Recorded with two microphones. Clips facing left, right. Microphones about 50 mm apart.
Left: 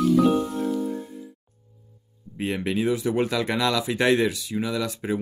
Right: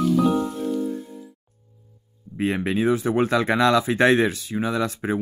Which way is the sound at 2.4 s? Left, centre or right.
Right.